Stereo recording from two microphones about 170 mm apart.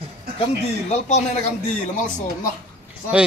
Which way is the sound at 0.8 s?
45° left (ahead or behind).